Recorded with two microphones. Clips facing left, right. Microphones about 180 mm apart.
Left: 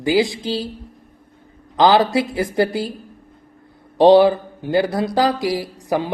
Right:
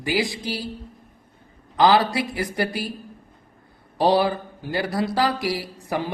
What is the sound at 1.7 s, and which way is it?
Speech, 20° left (ahead or behind).